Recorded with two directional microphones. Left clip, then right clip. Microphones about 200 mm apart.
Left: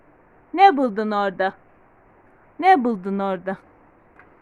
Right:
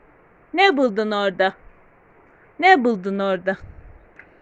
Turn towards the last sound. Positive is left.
turn(degrees=0)  # may be behind; listen again after turning